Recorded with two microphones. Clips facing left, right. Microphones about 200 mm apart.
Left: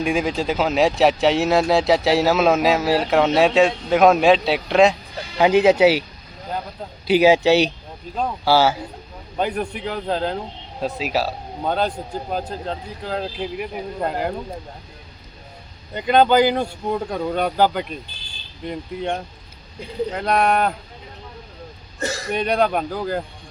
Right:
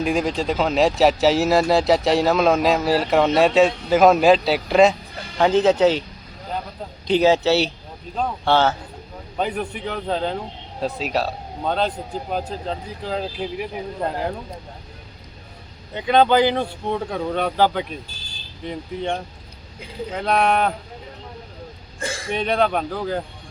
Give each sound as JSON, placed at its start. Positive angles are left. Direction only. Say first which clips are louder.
{"t": 0.0, "sound": "speech", "louder": "even", "side_deg": 0}
{"t": 5.4, "sound": "speech", "louder": "left 2 dB", "side_deg": 10}
{"t": 7.1, "sound": "speech", "louder": "left 2 dB", "side_deg": 10}
{"t": 16.0, "sound": "speech", "louder": "left 1 dB", "side_deg": 5}
{"t": 22.0, "sound": "speech", "louder": "left 3 dB", "side_deg": 40}
{"t": 22.3, "sound": "speech", "louder": "even", "side_deg": 0}